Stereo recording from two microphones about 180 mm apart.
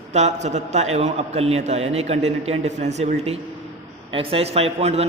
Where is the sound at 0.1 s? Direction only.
40° right (ahead or behind).